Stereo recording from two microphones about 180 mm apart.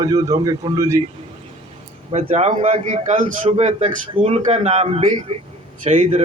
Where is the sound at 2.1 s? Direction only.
35° right (ahead or behind).